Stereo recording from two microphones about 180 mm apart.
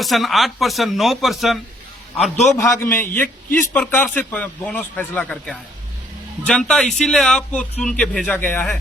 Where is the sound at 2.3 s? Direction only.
40° left (ahead or behind).